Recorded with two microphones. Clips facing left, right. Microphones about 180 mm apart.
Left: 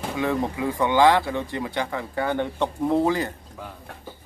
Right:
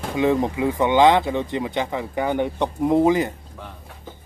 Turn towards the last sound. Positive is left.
turn(degrees=-20)  # may be behind; listen again after turning